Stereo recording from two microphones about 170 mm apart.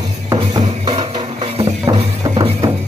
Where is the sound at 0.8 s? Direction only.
30° right (ahead or behind).